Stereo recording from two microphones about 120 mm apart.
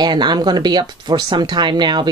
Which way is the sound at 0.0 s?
35° right (ahead or behind).